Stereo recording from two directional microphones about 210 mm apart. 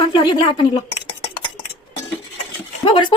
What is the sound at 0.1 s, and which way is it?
Speech, 20° left (ahead or behind).